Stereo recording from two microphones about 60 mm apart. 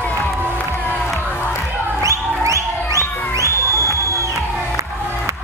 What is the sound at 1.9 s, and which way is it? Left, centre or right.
Music, right.